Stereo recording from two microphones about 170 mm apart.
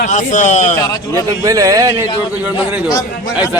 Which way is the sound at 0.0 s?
45° left (ahead or behind).